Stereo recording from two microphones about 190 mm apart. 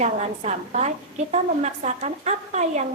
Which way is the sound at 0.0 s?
35° right (ahead or behind).